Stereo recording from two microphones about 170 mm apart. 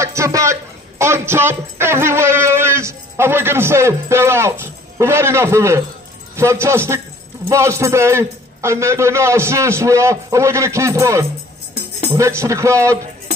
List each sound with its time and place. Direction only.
0.0 s a man's voice: 15° right (ahead or behind)